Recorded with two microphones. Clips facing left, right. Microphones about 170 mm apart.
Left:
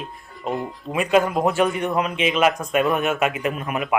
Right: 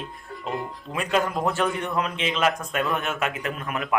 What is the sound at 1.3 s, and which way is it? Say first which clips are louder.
A man's voice: left 5 dB; 25° left (ahead or behind).